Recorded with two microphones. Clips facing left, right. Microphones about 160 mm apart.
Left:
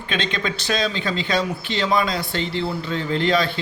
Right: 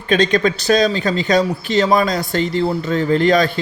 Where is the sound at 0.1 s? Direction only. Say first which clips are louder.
Right 10 dB; 40° right (ahead or behind).